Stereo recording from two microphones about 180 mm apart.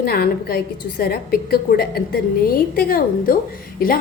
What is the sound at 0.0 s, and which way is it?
A woman's voice, 60° left (ahead or behind).